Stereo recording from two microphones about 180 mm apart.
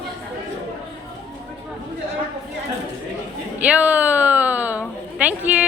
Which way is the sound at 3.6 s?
10° right (ahead or behind).